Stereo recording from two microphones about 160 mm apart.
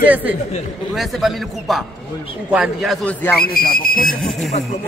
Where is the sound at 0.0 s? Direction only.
10° right (ahead or behind).